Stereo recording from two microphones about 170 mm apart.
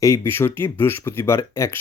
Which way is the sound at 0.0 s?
15° left (ahead or behind).